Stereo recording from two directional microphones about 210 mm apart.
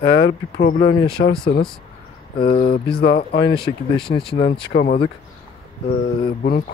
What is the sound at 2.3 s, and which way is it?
Speech, 45° left (ahead or behind).